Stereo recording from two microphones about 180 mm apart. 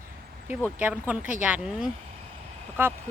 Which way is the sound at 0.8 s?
10° right (ahead or behind).